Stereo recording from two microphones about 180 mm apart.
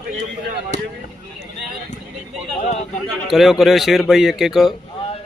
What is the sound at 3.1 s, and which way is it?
A man's voice, centre (ahead or behind).